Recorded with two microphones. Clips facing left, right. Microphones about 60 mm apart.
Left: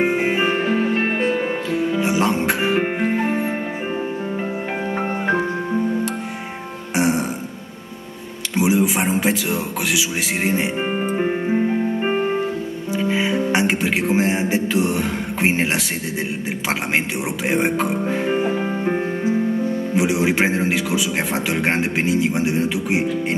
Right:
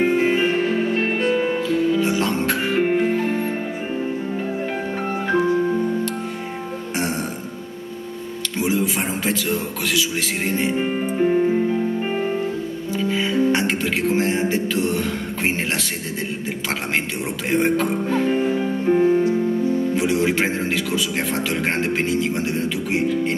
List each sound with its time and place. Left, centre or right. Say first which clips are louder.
0.0 s music: right 1 dB; centre
4.9 s music: left 1 dB; left
7.0 s music: left 6 dB; centre
8.5 s music: left 4 dB; centre
10.8 s music: right 1 dB; left
13.0 s music: right 1 dB; centre
17.5 s music: right 1 dB; centre